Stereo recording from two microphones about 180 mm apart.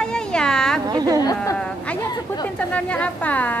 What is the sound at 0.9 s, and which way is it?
Speech, 20° right (ahead or behind).